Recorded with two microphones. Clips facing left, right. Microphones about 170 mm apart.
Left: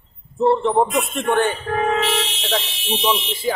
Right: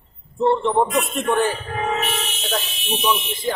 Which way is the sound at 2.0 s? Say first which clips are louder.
Left 4 dB; 90° left.